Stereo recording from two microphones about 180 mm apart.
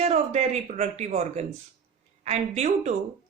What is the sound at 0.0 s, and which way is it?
Speech, 40° right (ahead or behind).